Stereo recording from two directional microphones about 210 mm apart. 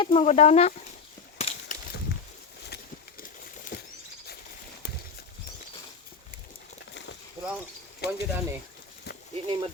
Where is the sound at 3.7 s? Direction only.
55° left (ahead or behind).